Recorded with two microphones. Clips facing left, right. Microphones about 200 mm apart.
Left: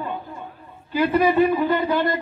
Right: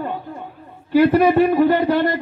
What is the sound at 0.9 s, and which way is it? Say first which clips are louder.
A man's voice: right 5 dB; 65° right (ahead or behind).